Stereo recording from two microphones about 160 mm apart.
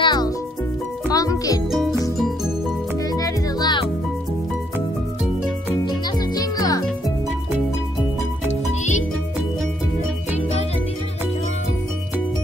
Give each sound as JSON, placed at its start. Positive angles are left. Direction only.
{"t": 0.0, "sound": "music", "side_deg": 25}
{"t": 3.2, "sound": "music", "side_deg": 25}
{"t": 5.9, "sound": "music", "side_deg": 25}